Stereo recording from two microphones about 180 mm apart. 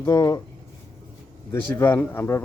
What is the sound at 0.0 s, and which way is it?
Speech, 15° left (ahead or behind).